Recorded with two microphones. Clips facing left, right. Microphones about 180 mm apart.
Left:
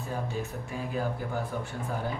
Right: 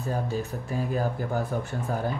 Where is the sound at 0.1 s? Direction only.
35° right (ahead or behind).